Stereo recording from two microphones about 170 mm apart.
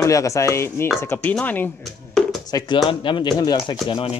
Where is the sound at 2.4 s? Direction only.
25° left (ahead or behind).